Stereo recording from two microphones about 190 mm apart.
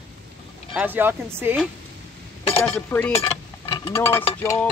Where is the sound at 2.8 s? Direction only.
10° left (ahead or behind).